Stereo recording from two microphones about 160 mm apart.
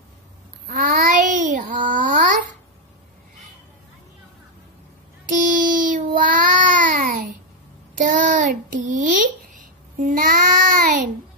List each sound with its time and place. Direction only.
0.7 s child singing: 55° right (ahead or behind)
5.2 s a sound: 55° right (ahead or behind)
8.0 s child singing: 55° right (ahead or behind)